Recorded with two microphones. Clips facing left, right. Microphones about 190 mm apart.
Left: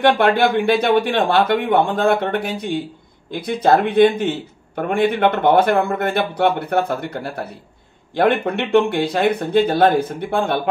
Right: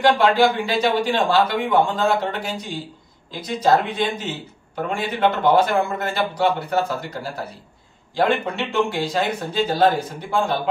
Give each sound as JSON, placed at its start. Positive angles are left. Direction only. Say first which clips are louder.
{"t": 0.0, "sound": "speech", "louder": "left 1 dB", "side_deg": 60}